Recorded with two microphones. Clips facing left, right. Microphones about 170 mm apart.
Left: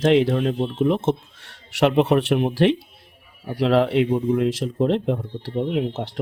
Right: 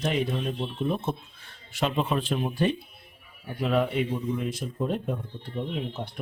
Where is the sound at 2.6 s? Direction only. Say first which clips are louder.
Left 8 dB; 90° left.